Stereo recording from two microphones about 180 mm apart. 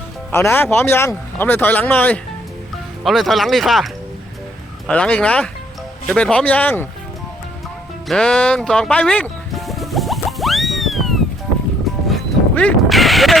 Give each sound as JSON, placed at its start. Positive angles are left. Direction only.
{"t": 0.3, "sound": "speech", "side_deg": 15}
{"t": 4.9, "sound": "speech", "side_deg": 5}
{"t": 8.0, "sound": "music", "side_deg": 5}